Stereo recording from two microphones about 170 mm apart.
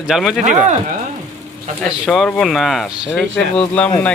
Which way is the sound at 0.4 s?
50° right (ahead or behind).